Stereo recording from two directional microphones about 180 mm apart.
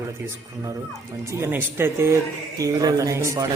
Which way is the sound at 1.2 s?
15° right (ahead or behind).